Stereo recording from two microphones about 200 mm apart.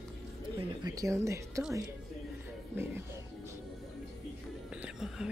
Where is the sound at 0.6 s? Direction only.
20° right (ahead or behind).